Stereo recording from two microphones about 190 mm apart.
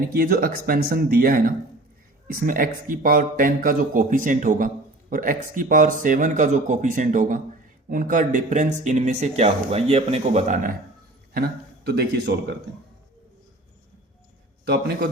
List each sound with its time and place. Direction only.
0.1 s speech: 50° right (ahead or behind)
11.3 s a man's voice: 55° right (ahead or behind)
14.7 s a man's voice: 55° right (ahead or behind)